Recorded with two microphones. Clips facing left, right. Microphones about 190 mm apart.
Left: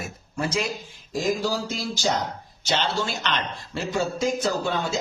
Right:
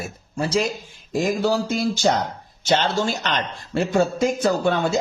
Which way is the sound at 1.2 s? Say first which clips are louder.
Right 4 dB; 60° right (ahead or behind).